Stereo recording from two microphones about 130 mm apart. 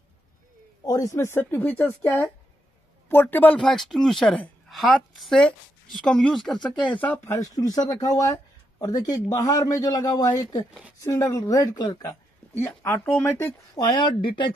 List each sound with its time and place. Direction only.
0.8 s a woman's voice: 25° left (ahead or behind)
3.6 s a woman's voice: centre (ahead or behind)
7.2 s a man's voice: 25° left (ahead or behind)
12.5 s a woman's voice: 15° left (ahead or behind)
14.0 s speech: 40° left (ahead or behind)